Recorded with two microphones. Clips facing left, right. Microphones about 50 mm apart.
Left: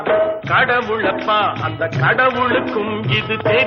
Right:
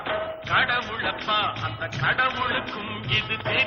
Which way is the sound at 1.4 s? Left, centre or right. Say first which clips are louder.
Left 9 dB; left.